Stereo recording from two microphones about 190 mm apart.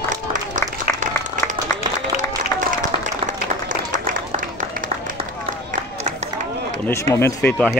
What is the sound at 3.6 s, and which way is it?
Applause, 45° right (ahead or behind).